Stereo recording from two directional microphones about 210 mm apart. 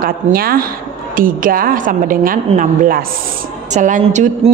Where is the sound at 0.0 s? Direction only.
45° right (ahead or behind).